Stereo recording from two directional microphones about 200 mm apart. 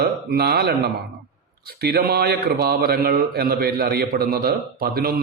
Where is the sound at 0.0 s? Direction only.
50° right (ahead or behind).